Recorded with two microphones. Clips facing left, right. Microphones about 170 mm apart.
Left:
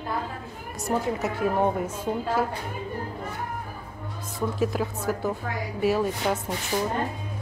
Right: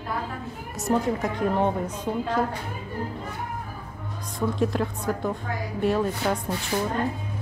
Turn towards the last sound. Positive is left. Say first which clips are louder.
# right 1 dB
turn(degrees=5)  # may be behind; listen again after turning